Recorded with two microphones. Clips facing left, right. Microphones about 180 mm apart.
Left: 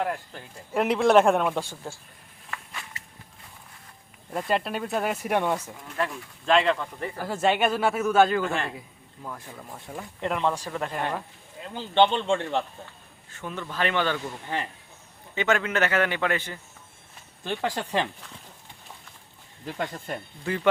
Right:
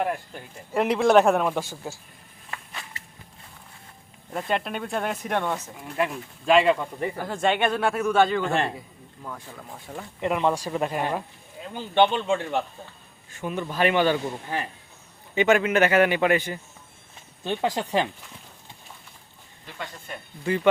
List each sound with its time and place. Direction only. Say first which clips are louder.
0.0 s speech: right 2 dB; 15° right (ahead or behind)
0.7 s speech: right 1 dB; centre (ahead or behind)
4.4 s speech: left 1 dB; centre (ahead or behind)
5.8 s speech: right 3 dB; 15° right (ahead or behind)
7.2 s speech: left 1 dB; 5° left (ahead or behind); by 18.1 s 15° right (ahead or behind)
19.6 s speech: left 6 dB; 45° left (ahead or behind)